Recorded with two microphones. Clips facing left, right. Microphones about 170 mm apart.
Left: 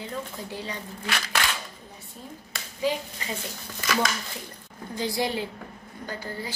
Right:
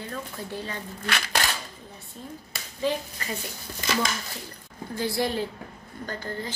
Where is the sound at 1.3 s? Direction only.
35° right (ahead or behind).